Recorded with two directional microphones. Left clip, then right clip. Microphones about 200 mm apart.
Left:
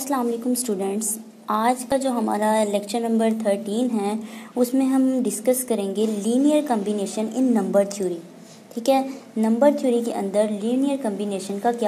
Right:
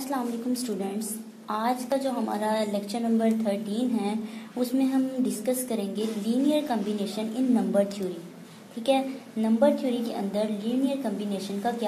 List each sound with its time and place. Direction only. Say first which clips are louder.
0.1 s a woman's voice: left 7 dB; 35° left (ahead or behind)
8.8 s a woman's voice: left 5 dB; 35° left (ahead or behind)